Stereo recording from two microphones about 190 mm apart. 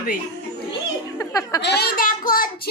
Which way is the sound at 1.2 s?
15° left (ahead or behind).